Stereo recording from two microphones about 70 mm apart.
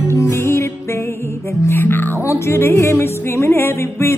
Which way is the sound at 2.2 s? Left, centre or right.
Left.